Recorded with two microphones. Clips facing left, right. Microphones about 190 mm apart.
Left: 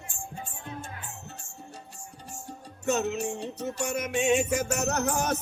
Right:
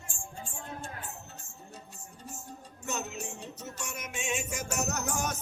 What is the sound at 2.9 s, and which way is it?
Music, 70° left (ahead or behind).